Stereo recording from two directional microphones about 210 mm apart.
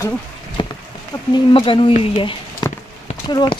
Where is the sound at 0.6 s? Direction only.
20° left (ahead or behind).